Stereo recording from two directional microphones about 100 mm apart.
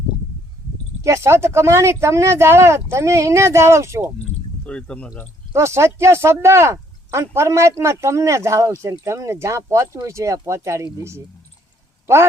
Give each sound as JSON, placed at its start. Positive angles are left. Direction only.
{"t": 1.0, "sound": "speech", "side_deg": -30}
{"t": 4.6, "sound": "speech", "side_deg": 10}
{"t": 5.5, "sound": "speech", "side_deg": -30}